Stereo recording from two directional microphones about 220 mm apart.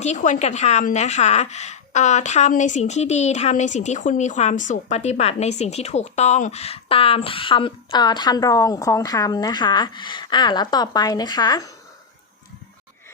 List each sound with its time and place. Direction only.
0.0 s a woman's voice: 30° left (ahead or behind); by 11.7 s 15° left (ahead or behind)